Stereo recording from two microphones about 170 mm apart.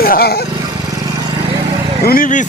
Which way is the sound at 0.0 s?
65° left (ahead or behind).